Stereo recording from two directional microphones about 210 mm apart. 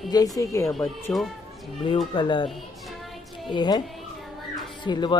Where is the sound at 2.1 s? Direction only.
20° left (ahead or behind).